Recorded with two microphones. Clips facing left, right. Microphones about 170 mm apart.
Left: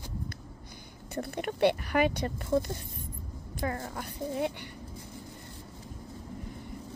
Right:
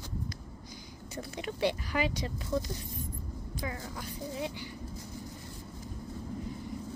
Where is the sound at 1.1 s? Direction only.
60° left (ahead or behind).